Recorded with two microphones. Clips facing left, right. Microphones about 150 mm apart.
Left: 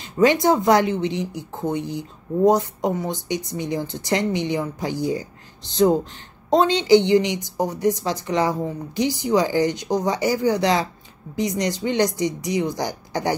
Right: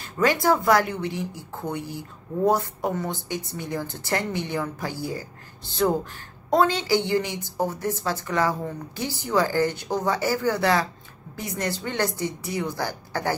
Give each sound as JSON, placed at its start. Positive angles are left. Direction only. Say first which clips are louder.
{"t": 0.0, "sound": "a woman's voice", "louder": "left 5 dB", "side_deg": 20}